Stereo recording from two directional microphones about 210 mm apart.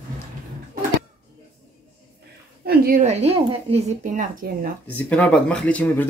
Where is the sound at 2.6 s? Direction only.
45° right (ahead or behind).